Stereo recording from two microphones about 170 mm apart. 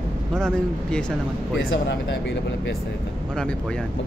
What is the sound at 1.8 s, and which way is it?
Speech, 90° left.